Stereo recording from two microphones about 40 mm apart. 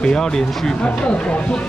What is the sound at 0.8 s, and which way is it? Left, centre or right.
Speech, left.